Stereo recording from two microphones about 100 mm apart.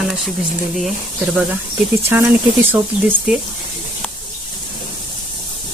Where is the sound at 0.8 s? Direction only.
Centre (ahead or behind).